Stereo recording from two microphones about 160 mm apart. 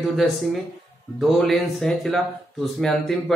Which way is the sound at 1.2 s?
Centre (ahead or behind).